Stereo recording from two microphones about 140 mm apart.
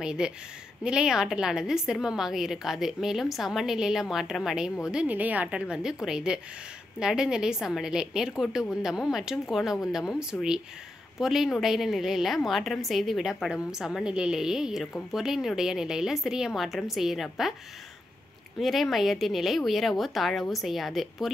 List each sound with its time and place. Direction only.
0.0 s a woman's voice: 5° right (ahead or behind)
18.6 s a woman's voice: centre (ahead or behind)